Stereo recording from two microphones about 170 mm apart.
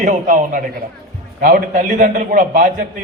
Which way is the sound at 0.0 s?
50° right (ahead or behind).